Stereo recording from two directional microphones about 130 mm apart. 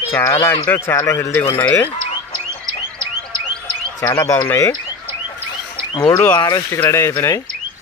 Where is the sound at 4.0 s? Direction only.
25° left (ahead or behind).